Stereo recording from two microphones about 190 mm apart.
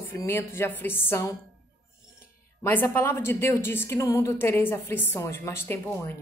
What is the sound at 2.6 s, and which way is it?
Speech, 10° left (ahead or behind).